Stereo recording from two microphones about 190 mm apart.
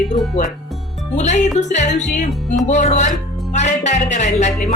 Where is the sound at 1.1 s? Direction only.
40° left (ahead or behind).